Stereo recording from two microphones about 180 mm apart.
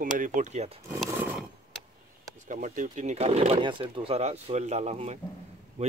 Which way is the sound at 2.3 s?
45° right (ahead or behind).